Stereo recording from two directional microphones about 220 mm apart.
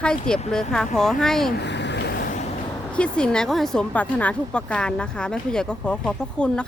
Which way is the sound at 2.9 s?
5° left (ahead or behind).